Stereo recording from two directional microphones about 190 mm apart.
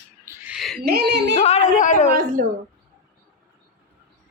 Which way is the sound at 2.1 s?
45° right (ahead or behind).